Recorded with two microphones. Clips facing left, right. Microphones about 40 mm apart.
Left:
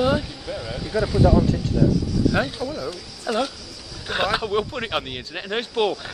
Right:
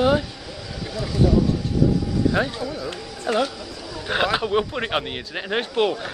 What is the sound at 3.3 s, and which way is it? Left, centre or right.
Speech, right.